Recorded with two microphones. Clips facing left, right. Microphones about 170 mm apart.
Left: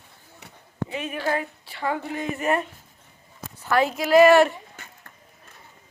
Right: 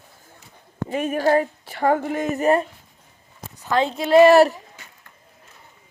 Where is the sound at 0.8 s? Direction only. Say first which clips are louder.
Right 8 dB; 45° right (ahead or behind).